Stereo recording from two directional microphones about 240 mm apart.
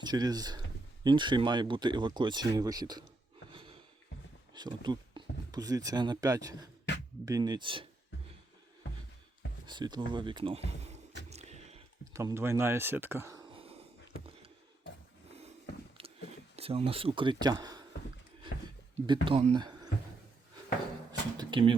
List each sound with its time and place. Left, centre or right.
0.0 s speech: centre
3.5 s snort: right
4.5 s speech: centre
6.9 s music: left
7.3 s speech: centre
9.6 s speech: centre
11.3 s a sound: right
12.1 s speech: centre
13.5 s a sound: right
16.0 s a sound: right
16.6 s a man's voice: right
19.0 s speech: centre
21.1 s a sound: centre